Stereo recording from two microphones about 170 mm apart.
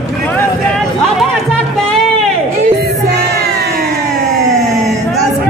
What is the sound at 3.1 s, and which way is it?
Music, 70° right (ahead or behind).